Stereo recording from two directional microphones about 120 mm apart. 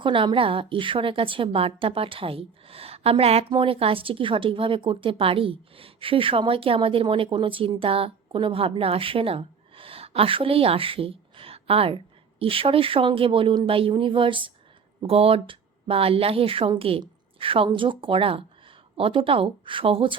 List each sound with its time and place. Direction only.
0.0 s a woman's voice: 45° right (ahead or behind)